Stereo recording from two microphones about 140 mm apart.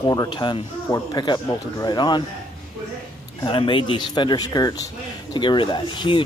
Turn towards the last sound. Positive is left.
turn(degrees=35)  # may be behind; listen again after turning